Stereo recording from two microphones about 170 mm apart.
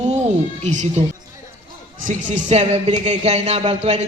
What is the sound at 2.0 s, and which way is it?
Speech, 45° right (ahead or behind).